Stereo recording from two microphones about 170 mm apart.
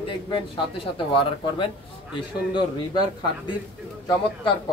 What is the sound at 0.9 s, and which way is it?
Speech, 30° left (ahead or behind).